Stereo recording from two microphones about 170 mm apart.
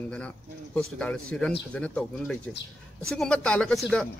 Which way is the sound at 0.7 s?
5° left (ahead or behind).